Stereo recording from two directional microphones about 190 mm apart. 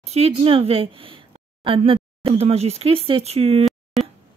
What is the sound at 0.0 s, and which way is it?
Speech, 35° right (ahead or behind).